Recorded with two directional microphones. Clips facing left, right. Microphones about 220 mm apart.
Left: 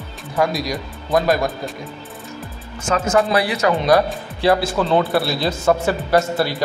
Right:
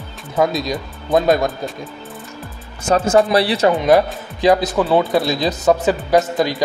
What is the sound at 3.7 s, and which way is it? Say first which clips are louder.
A man's voice: even; 15° right (ahead or behind).